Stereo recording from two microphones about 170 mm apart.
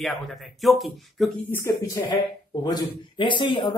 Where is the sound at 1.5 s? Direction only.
15° left (ahead or behind).